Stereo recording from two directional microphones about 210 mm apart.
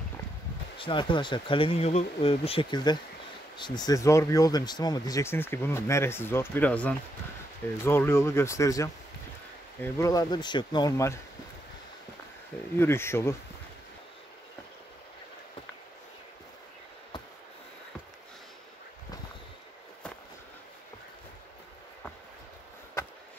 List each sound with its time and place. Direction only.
0.7 s speech: 25° left (ahead or behind)
12.7 s speech: 10° left (ahead or behind)